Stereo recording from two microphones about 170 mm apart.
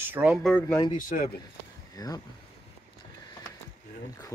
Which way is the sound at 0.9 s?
55° left (ahead or behind).